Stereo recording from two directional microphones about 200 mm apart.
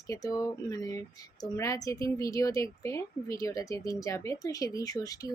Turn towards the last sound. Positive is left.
turn(degrees=15)  # may be behind; listen again after turning